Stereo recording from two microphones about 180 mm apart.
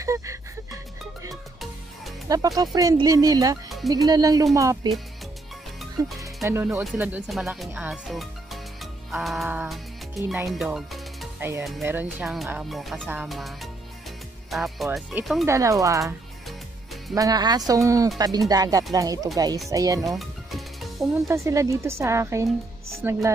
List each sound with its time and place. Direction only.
0.0 s speech: 15° right (ahead or behind)
1.3 s music: centre (ahead or behind)
2.2 s speech: 20° right (ahead or behind)
3.6 s music: centre (ahead or behind)
3.9 s speech: 20° right (ahead or behind)
5.8 s music: centre (ahead or behind)
6.2 s speech: 15° right (ahead or behind)
9.1 s music: centre (ahead or behind)
10.2 s speech: 10° right (ahead or behind)
10.5 s music: centre (ahead or behind)
11.3 s speech: 10° right (ahead or behind)
15.4 s speech: 15° right (ahead or behind)
20.0 s music: centre (ahead or behind)
21.1 s speech: 15° right (ahead or behind)